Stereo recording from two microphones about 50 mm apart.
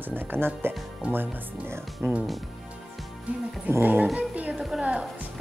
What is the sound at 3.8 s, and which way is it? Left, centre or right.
Speech, right.